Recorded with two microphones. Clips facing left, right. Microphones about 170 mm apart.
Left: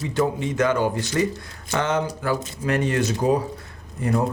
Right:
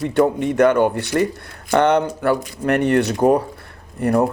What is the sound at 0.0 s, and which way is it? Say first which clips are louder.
Speech: right 6 dB; 55° right (ahead or behind).